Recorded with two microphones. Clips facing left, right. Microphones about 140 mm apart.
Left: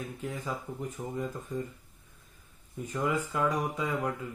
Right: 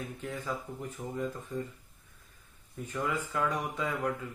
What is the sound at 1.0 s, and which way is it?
Speech, 20° left (ahead or behind).